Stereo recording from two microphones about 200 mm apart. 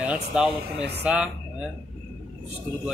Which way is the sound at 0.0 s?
5° right (ahead or behind).